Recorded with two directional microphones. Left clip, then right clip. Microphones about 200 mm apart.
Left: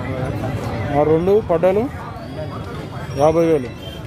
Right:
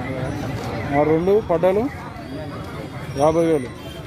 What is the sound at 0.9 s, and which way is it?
Speech, 5° right (ahead or behind).